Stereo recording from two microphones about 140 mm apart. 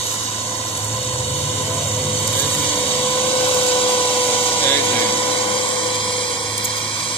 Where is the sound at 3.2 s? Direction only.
40° left (ahead or behind).